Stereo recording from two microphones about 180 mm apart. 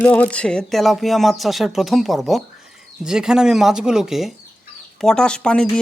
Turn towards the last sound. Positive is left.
turn(degrees=5)  # may be behind; listen again after turning